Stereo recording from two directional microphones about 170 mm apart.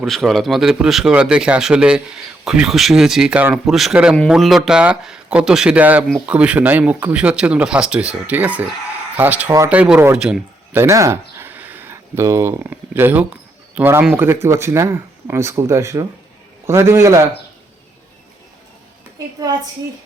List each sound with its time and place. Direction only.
0.0 s speech: centre (ahead or behind); by 17.2 s 20° right (ahead or behind)